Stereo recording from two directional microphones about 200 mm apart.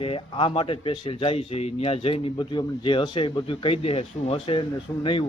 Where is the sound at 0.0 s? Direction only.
25° left (ahead or behind).